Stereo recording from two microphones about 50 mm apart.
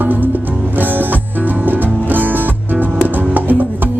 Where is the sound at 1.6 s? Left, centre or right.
Right.